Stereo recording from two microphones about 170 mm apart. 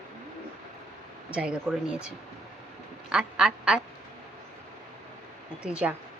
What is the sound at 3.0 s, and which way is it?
Speech, 5° right (ahead or behind).